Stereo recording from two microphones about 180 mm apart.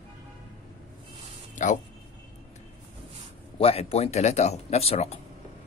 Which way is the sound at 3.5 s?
35° left (ahead or behind).